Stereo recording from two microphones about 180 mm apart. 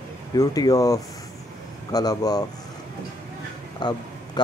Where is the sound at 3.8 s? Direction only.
25° left (ahead or behind).